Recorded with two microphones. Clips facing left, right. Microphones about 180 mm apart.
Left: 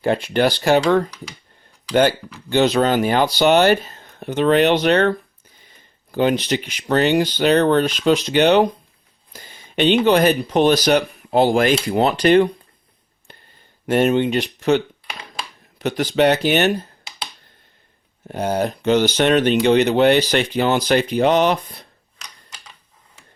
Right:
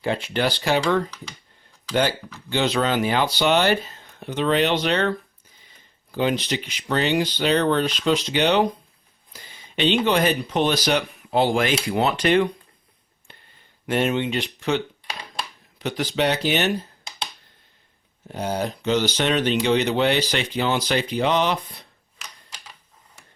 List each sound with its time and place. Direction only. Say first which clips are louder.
0.0 s speech: left 6 dB; 50° left (ahead or behind)
1.9 s speech: left 6 dB; 55° left (ahead or behind)
2.5 s speech: left 6 dB; 45° left (ahead or behind)
13.3 s a sound: left 4 dB; 40° left (ahead or behind)
13.8 s speech: left 6 dB; 45° left (ahead or behind)
15.8 s speech: left 6 dB; 50° left (ahead or behind)
18.3 s speech: left 5 dB; 55° left (ahead or behind)